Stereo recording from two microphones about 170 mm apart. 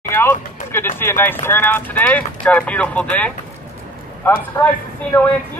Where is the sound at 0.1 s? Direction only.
15° left (ahead or behind).